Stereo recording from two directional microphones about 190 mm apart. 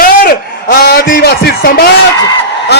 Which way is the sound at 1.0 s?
65° left (ahead or behind).